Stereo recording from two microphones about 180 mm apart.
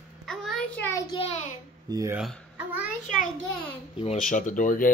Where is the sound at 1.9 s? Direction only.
20° right (ahead or behind).